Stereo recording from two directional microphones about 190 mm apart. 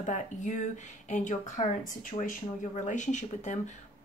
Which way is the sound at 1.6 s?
35° left (ahead or behind).